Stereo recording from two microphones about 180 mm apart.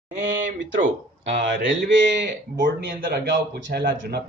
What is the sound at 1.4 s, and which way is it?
A man's voice, 75° right (ahead or behind).